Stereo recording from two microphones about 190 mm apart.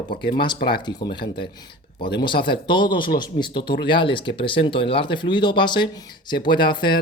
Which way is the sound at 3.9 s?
25° left (ahead or behind).